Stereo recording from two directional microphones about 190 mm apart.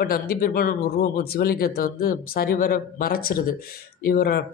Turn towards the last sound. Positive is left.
turn(degrees=55)  # may be behind; listen again after turning